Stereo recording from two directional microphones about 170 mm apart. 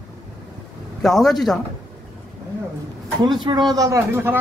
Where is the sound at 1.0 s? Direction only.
Centre (ahead or behind).